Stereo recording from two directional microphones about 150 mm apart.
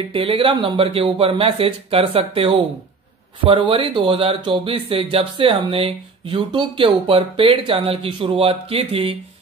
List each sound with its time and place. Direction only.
0.1 s speech: 35° right (ahead or behind)